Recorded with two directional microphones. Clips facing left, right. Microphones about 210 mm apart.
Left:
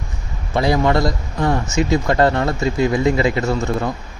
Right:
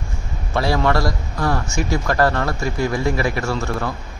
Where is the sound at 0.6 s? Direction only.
20° left (ahead or behind).